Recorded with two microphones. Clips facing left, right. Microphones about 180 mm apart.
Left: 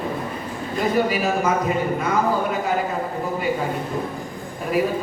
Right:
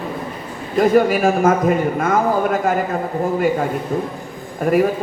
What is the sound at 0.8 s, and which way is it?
A man's voice, 50° right (ahead or behind).